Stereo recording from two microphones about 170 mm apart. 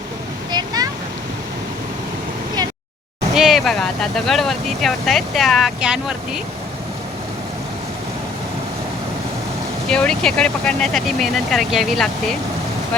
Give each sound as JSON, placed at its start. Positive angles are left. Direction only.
{"t": 0.5, "sound": "a sound", "side_deg": -25}
{"t": 3.3, "sound": "speech", "side_deg": 0}
{"t": 9.9, "sound": "speech", "side_deg": 5}